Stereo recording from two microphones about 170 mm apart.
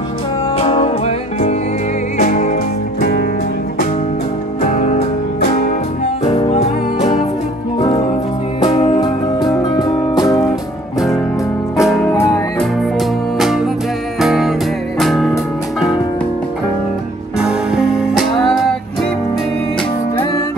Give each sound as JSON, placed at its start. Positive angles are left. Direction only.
{"t": 0.6, "sound": "music", "side_deg": 35}
{"t": 2.1, "sound": "music", "side_deg": 45}
{"t": 4.6, "sound": "music", "side_deg": 40}
{"t": 6.2, "sound": "music", "side_deg": 30}
{"t": 8.6, "sound": "music", "side_deg": 35}
{"t": 11.7, "sound": "music", "side_deg": 0}
{"t": 12.1, "sound": "music", "side_deg": 20}
{"t": 14.2, "sound": "music", "side_deg": 0}
{"t": 17.4, "sound": "music", "side_deg": -5}